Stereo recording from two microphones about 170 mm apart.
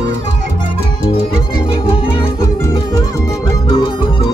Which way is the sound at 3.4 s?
30° left (ahead or behind).